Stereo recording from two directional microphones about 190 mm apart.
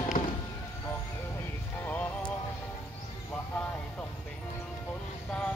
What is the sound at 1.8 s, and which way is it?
Music, 10° left (ahead or behind).